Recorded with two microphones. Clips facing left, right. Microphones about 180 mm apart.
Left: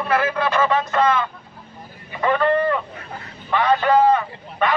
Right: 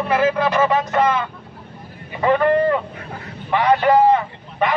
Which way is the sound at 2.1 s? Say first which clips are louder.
Right 3 dB; 15° right (ahead or behind).